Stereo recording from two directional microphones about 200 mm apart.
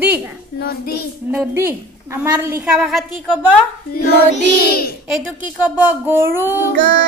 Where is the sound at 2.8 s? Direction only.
Centre (ahead or behind).